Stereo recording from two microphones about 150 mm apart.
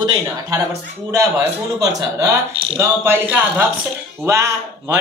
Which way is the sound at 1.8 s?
25° right (ahead or behind).